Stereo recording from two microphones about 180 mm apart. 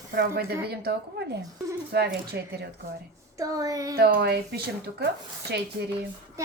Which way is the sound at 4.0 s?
60° right (ahead or behind).